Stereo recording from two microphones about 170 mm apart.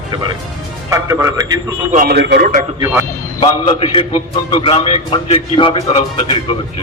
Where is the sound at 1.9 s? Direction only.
65° right (ahead or behind).